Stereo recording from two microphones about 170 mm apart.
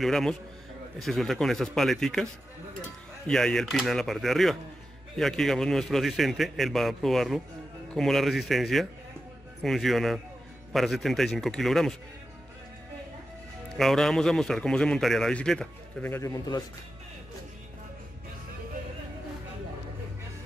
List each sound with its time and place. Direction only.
0.0 s a man's voice: centre (ahead or behind)
3.3 s a man's voice: 5° left (ahead or behind)
13.7 s a man's voice: centre (ahead or behind)
16.1 s a man's voice: 20° left (ahead or behind)